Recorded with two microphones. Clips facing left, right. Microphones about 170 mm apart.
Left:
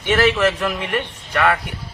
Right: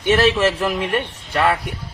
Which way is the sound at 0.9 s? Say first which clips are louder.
Right 1 dB; 30° right (ahead or behind).